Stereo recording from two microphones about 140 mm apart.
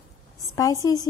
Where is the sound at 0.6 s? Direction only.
25° left (ahead or behind).